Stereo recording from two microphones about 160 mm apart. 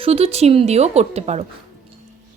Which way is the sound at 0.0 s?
40° right (ahead or behind).